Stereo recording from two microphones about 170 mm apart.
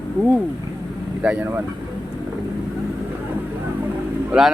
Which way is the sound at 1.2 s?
10° right (ahead or behind).